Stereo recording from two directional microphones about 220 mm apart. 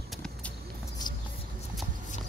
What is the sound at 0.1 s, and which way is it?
Vehicle, 5° left (ahead or behind).